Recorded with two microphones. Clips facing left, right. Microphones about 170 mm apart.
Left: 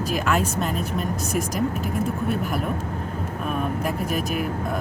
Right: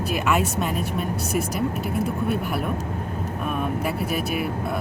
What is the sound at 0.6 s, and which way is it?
Speech, 5° right (ahead or behind).